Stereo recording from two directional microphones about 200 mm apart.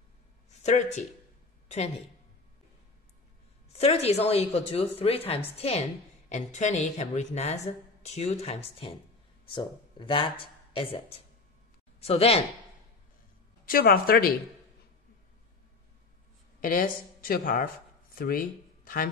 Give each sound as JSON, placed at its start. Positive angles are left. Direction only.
{"t": 0.6, "sound": "speech", "side_deg": 35}
{"t": 3.7, "sound": "speech", "side_deg": 30}
{"t": 13.7, "sound": "speech", "side_deg": 45}
{"t": 16.6, "sound": "speech", "side_deg": 45}